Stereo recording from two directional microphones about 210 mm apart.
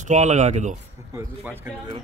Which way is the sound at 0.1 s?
35° right (ahead or behind).